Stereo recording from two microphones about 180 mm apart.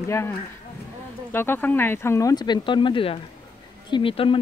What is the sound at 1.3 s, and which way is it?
Speech, 10° left (ahead or behind).